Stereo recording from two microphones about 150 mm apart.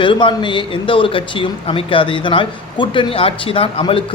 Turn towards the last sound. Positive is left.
turn(degrees=35)  # may be behind; listen again after turning